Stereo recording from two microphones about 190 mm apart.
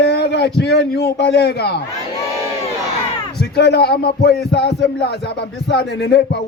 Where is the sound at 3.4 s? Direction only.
60° left (ahead or behind).